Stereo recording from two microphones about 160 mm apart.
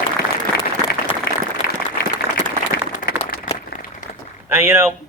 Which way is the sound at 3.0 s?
65° left (ahead or behind).